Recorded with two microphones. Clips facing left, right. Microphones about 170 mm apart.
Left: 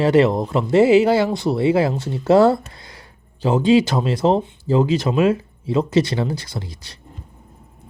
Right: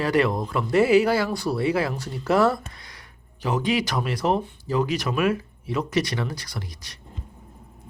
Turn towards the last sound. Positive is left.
turn(degrees=25)  # may be behind; listen again after turning